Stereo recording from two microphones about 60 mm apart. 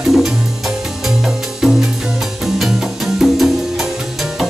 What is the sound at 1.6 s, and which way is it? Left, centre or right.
Music, centre.